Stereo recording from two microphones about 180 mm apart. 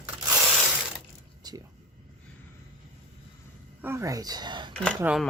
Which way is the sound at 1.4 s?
20° right (ahead or behind).